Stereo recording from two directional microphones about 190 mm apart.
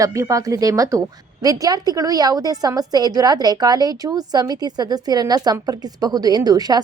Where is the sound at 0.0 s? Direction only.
15° right (ahead or behind).